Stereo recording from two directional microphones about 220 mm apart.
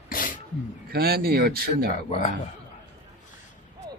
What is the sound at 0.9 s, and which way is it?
Speech, 45° right (ahead or behind).